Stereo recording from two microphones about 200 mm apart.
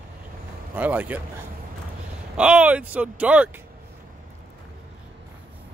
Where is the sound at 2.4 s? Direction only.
5° right (ahead or behind).